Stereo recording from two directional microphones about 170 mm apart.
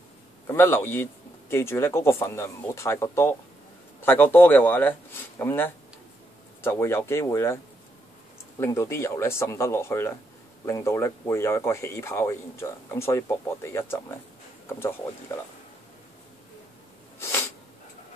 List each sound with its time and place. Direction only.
0.5 s speech: 15° left (ahead or behind)
8.5 s speech: 15° left (ahead or behind)
17.2 s sneeze: 15° left (ahead or behind)